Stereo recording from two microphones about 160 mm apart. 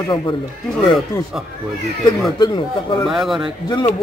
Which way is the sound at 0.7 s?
Centre (ahead or behind).